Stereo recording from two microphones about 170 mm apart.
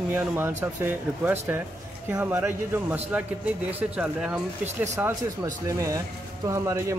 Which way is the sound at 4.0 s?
10° right (ahead or behind).